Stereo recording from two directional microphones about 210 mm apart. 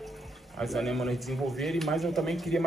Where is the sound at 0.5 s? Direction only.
Centre (ahead or behind).